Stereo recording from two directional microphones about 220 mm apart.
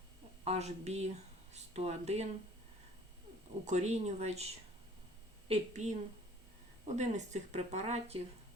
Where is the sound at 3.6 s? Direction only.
30° right (ahead or behind).